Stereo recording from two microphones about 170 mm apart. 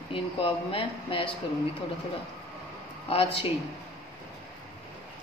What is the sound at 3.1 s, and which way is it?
Speech, 35° left (ahead or behind).